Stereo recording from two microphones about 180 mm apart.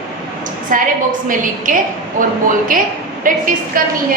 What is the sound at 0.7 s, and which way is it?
A woman's voice, 50° right (ahead or behind).